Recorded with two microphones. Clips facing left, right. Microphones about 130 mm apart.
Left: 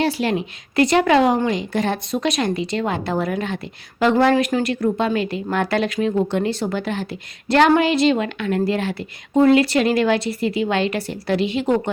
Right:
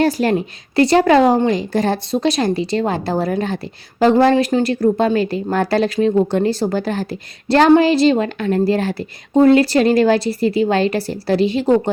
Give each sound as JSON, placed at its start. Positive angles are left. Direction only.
{"t": 0.0, "sound": "a woman's voice", "side_deg": -45}